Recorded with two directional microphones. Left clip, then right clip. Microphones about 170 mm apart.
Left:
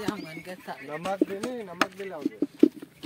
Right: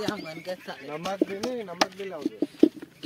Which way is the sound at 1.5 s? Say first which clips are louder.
Right 3 dB; centre (ahead or behind).